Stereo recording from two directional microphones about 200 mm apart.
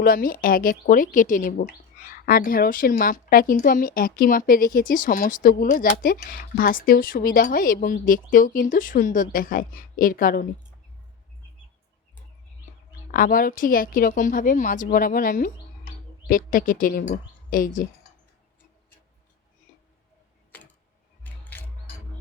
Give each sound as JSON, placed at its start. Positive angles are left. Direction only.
{"t": 0.0, "sound": "speech", "side_deg": 45}
{"t": 13.1, "sound": "a woman's voice", "side_deg": 45}
{"t": 21.2, "sound": "a sound", "side_deg": 10}